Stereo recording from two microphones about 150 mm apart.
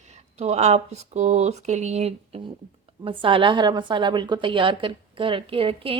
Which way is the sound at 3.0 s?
35° right (ahead or behind).